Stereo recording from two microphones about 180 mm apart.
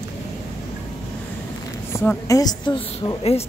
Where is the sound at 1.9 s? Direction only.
15° left (ahead or behind).